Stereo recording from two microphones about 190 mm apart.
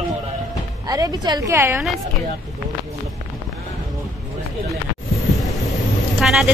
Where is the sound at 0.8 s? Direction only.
20° right (ahead or behind).